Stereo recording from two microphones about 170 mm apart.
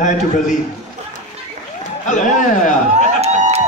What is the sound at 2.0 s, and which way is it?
Speech, 45° left (ahead or behind).